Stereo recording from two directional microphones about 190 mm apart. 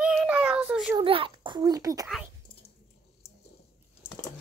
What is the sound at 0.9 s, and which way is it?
A child's voice, 25° right (ahead or behind).